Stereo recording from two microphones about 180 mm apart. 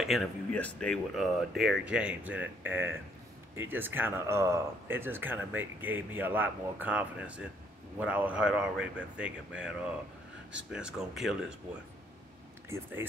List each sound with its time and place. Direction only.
0.0 s speech: centre (ahead or behind)
12.6 s speech: 15° right (ahead or behind)